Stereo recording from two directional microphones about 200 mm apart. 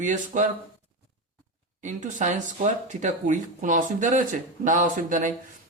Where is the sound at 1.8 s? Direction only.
40° right (ahead or behind).